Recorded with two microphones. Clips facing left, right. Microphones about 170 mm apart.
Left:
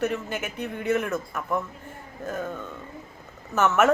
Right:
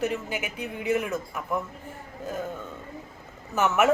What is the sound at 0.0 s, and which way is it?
A woman's voice, 15° right (ahead or behind).